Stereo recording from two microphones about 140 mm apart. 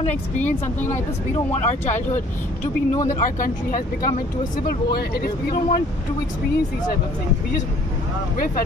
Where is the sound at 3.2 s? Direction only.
75° left (ahead or behind).